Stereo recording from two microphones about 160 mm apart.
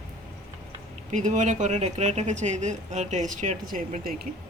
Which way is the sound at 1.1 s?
50° right (ahead or behind).